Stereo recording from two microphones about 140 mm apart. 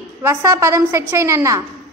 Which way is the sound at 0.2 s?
20° right (ahead or behind).